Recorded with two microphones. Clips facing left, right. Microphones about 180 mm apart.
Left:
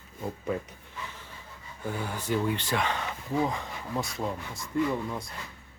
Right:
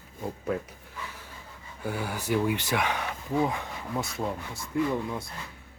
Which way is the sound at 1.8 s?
10° right (ahead or behind).